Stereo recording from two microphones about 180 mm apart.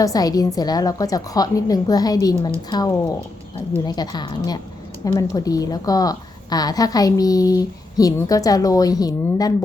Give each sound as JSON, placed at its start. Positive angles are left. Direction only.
{"t": 0.0, "sound": "a woman's voice", "side_deg": 20}